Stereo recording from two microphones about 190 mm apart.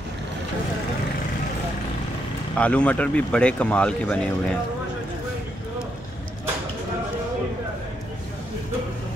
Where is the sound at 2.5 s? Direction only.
5° left (ahead or behind).